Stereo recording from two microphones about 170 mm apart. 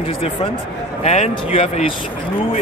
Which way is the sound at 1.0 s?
40° left (ahead or behind).